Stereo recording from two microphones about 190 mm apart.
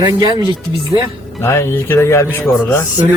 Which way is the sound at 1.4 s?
15° left (ahead or behind).